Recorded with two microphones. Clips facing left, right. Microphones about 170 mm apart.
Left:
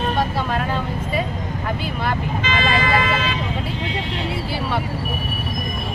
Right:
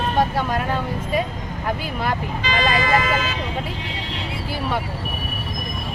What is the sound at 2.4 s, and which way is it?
Speech, 40° right (ahead or behind).